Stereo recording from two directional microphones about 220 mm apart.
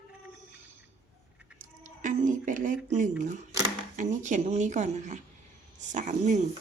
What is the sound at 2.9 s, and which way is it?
A woman's voice, 35° right (ahead or behind).